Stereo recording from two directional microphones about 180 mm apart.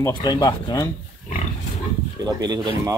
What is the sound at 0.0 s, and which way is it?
Speech, 25° left (ahead or behind).